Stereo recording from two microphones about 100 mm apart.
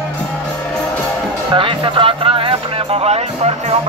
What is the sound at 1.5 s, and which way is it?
Music, 60° right (ahead or behind).